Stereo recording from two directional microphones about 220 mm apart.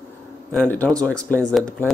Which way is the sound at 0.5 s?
5° left (ahead or behind).